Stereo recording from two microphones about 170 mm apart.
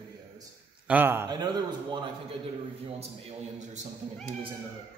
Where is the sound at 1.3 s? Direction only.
25° right (ahead or behind).